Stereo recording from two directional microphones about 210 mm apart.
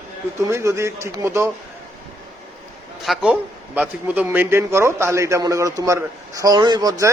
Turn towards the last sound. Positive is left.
turn(degrees=-20)  # may be behind; listen again after turning